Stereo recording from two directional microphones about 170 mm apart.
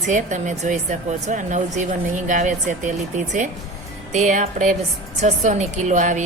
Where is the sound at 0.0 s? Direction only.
50° right (ahead or behind).